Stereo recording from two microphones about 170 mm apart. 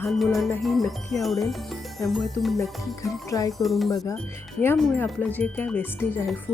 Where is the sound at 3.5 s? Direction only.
Centre (ahead or behind).